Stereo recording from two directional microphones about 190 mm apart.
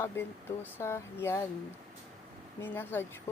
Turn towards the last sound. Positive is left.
turn(degrees=10)  # may be behind; listen again after turning